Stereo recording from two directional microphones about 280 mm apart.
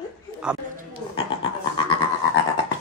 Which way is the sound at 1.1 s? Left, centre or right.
Centre.